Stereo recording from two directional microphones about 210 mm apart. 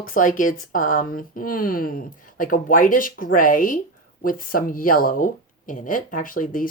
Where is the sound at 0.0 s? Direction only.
40° left (ahead or behind).